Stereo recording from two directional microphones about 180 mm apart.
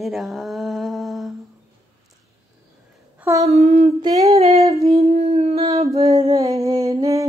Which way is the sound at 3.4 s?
35° right (ahead or behind).